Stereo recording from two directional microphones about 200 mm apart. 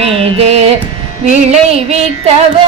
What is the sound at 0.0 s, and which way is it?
Music, 30° right (ahead or behind).